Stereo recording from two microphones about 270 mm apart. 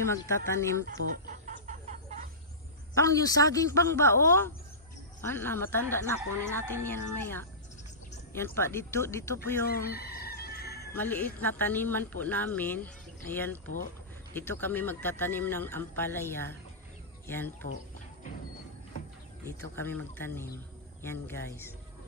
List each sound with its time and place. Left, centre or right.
0.1 s speech: centre
0.8 s chicken: right
2.9 s speech: centre
9.7 s chicken: left
10.9 s speech: centre
19.4 s speech: centre